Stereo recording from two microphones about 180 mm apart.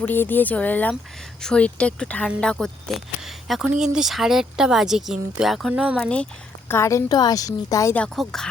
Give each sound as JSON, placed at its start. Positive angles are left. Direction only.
{"t": 0.0, "sound": "speech", "side_deg": 10}
{"t": 6.7, "sound": "a woman's voice", "side_deg": 15}
{"t": 7.9, "sound": "speech", "side_deg": 5}